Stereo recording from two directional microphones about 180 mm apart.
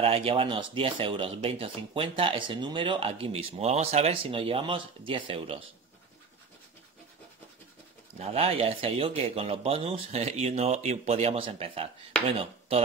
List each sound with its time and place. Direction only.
0.0 s speech: 30° right (ahead or behind)
8.2 s speech: 35° right (ahead or behind)